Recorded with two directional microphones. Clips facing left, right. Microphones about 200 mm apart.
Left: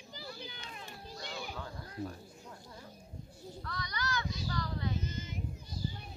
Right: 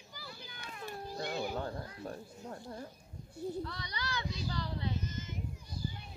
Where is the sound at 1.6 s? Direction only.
50° right (ahead or behind).